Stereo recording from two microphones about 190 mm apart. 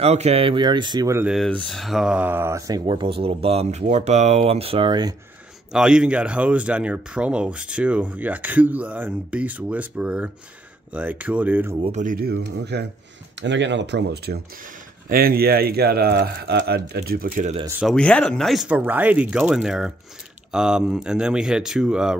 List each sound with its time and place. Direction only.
0.0 s speech: 35° right (ahead or behind); by 1.3 s 15° right (ahead or behind)
1.3 s speech: centre (ahead or behind); by 5.1 s 25° right (ahead or behind)
5.7 s speech: 5° right (ahead or behind)
11.8 s speech: 40° right (ahead or behind); by 12.8 s 60° right (ahead or behind)
13.4 s speech: 70° right (ahead or behind); by 17.5 s 50° right (ahead or behind)
17.8 s speech: 5° left (ahead or behind)